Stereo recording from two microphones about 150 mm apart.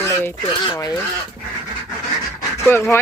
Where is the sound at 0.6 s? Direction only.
30° left (ahead or behind).